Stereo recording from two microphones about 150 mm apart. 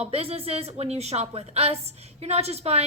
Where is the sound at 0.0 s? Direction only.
40° right (ahead or behind).